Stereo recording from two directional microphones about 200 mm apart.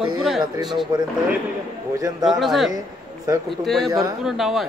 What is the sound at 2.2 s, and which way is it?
Speech, centre (ahead or behind).